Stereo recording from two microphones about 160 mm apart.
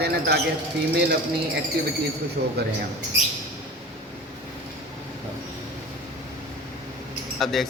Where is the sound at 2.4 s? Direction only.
70° right (ahead or behind).